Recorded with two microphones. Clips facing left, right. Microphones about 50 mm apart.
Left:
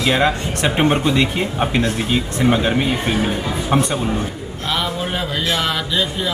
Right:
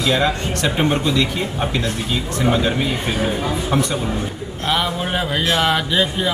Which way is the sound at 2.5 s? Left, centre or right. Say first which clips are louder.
Left 2 dB; centre.